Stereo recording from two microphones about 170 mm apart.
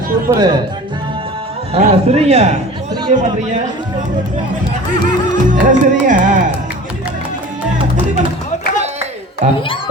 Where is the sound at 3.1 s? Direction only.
45° right (ahead or behind).